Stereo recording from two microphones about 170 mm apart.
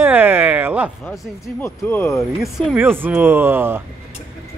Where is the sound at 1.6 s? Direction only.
15° left (ahead or behind).